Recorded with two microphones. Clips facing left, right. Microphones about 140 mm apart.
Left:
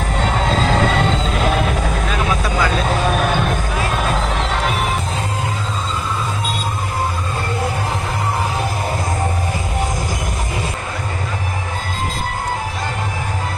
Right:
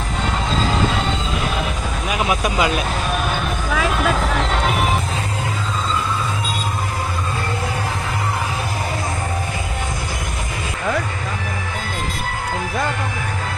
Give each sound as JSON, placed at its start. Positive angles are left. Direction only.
{"t": 2.0, "sound": "vehicle", "side_deg": -15}